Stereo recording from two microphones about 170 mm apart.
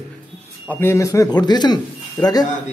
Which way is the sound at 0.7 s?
15° left (ahead or behind).